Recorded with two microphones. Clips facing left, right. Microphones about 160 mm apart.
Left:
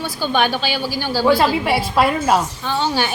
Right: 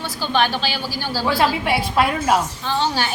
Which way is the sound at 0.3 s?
15° left (ahead or behind).